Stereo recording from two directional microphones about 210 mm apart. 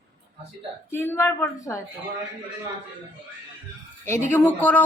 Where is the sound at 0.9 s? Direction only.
10° left (ahead or behind).